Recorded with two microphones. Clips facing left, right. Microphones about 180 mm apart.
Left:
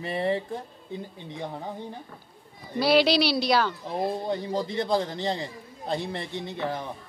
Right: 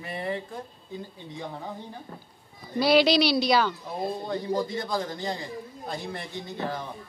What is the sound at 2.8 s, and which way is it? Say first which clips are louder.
Speech: right 1 dB; 5° left (ahead or behind).